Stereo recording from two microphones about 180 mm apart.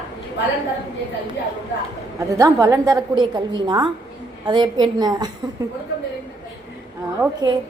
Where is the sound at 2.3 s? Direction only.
15° right (ahead or behind).